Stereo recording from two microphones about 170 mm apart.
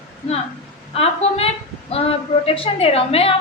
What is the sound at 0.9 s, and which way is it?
Speech, 35° left (ahead or behind).